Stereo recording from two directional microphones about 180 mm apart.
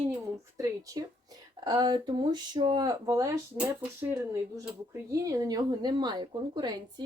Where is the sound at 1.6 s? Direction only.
25° right (ahead or behind).